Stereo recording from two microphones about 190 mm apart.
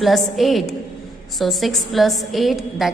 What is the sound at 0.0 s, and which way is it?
A woman's voice, centre (ahead or behind).